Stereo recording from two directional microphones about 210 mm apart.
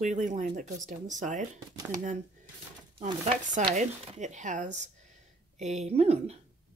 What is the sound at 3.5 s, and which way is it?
Speech, 35° right (ahead or behind).